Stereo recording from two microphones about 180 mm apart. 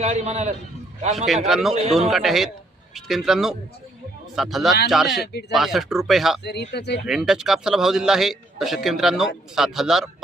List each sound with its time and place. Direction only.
0.0 s a man's voice: 35° right (ahead or behind)
1.1 s a man's voice: centre (ahead or behind)
5.2 s speech: 65° left (ahead or behind)
5.5 s a man's voice: centre (ahead or behind)
6.4 s speech: 70° left (ahead or behind)
7.1 s a man's voice: centre (ahead or behind)